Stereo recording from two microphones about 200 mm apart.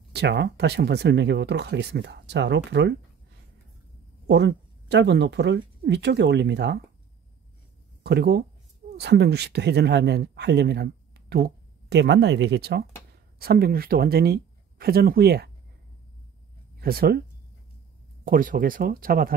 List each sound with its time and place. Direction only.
0.1 s speech: 55° right (ahead or behind)
4.3 s speech: 60° right (ahead or behind)
8.0 s speech: 55° right (ahead or behind)
16.7 s speech: 50° right (ahead or behind)
18.2 s speech: 45° right (ahead or behind)